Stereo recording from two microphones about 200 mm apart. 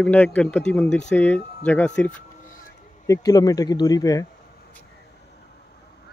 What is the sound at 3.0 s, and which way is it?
Speech, 15° left (ahead or behind).